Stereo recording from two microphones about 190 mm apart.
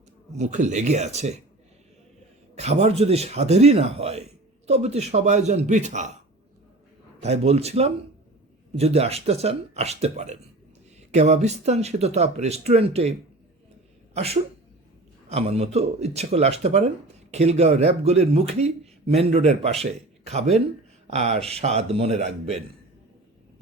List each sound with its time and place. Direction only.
0.3 s a man's voice: 40° right (ahead or behind)
2.6 s a man's voice: 35° right (ahead or behind)
7.2 s a man's voice: 35° right (ahead or behind)